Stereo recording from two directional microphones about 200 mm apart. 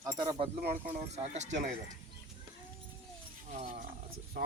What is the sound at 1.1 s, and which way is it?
Speech, 35° right (ahead or behind).